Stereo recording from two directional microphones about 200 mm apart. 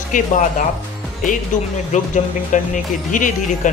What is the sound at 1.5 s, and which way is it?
Speech, 40° left (ahead or behind).